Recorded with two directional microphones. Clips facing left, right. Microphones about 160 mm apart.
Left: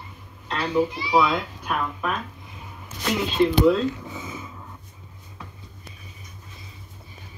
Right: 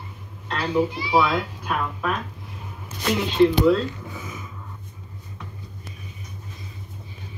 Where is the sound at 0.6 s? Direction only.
5° right (ahead or behind).